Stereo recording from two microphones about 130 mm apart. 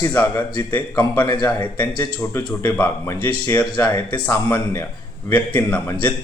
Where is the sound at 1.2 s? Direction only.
35° left (ahead or behind).